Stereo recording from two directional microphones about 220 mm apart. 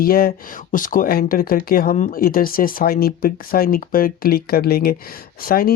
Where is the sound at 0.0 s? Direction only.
40° left (ahead or behind).